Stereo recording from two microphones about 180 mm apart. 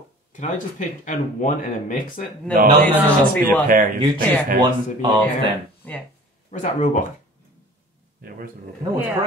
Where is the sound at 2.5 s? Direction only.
55° right (ahead or behind).